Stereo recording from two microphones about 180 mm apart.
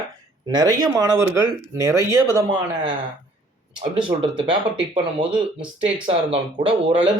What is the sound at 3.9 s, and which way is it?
Speech, 30° right (ahead or behind).